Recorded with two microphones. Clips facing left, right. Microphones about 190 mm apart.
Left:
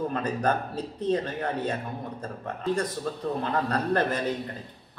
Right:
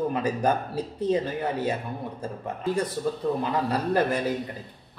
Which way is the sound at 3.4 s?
10° right (ahead or behind).